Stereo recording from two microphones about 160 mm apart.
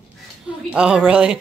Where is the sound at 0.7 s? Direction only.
5° right (ahead or behind).